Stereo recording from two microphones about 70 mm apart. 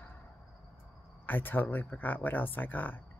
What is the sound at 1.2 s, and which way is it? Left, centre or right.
Speech, left.